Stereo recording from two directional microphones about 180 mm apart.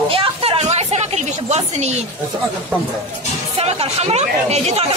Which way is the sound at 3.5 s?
35° right (ahead or behind).